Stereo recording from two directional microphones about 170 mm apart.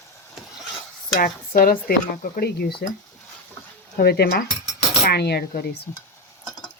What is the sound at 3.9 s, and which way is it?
Speech, 65° left (ahead or behind).